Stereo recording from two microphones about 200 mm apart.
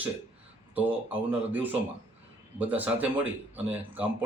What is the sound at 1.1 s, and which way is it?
Speech, 10° right (ahead or behind).